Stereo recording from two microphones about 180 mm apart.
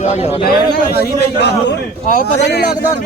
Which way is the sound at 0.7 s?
60° left (ahead or behind).